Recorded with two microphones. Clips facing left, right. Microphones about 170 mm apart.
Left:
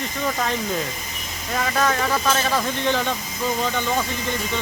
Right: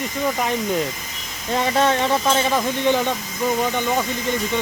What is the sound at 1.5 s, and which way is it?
Speech, 25° right (ahead or behind).